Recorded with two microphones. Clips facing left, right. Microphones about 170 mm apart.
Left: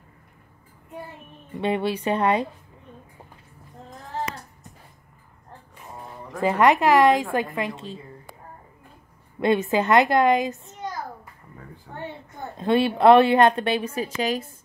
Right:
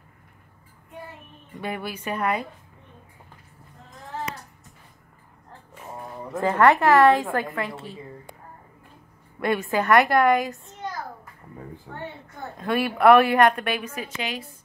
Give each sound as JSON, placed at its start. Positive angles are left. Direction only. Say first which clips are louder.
{"t": 1.6, "sound": "a woman's voice", "louder": "left 7 dB", "side_deg": 30}
{"t": 6.4, "sound": "a woman's voice", "louder": "even", "side_deg": 15}
{"t": 9.4, "sound": "a woman's voice", "louder": "left 3 dB", "side_deg": 20}
{"t": 12.5, "sound": "a woman's voice", "louder": "left 4 dB", "side_deg": 25}